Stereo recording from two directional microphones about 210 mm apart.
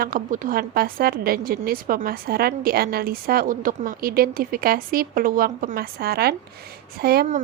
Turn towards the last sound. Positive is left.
turn(degrees=-40)  # may be behind; listen again after turning